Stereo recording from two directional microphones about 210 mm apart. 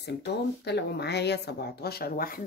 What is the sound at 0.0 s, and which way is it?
A woman's voice, 55° left (ahead or behind).